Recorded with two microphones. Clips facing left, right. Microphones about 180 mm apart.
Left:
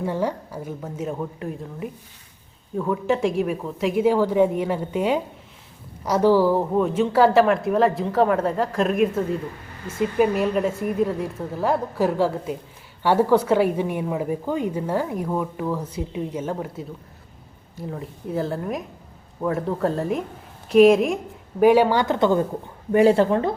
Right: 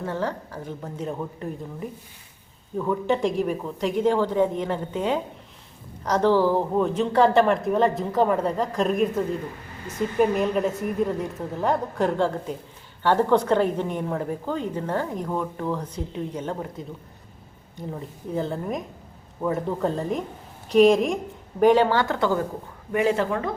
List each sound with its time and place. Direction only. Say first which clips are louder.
0.0 s a woman's voice: left 3 dB; 10° left (ahead or behind)
22.9 s speech: left 6 dB; 35° left (ahead or behind)